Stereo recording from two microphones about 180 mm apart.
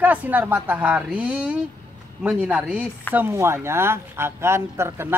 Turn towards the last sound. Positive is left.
turn(degrees=-15)  # may be behind; listen again after turning